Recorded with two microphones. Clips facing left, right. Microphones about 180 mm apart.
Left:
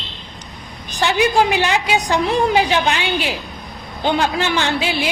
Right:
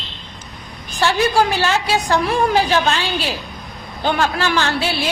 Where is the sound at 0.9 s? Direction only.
15° left (ahead or behind).